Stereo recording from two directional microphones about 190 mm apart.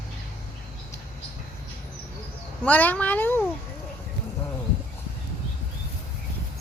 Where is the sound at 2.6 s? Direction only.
10° left (ahead or behind).